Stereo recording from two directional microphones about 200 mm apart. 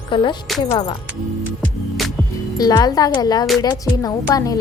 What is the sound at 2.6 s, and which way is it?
Speech, 20° left (ahead or behind).